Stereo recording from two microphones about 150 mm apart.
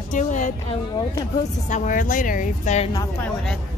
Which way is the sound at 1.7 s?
60° left (ahead or behind).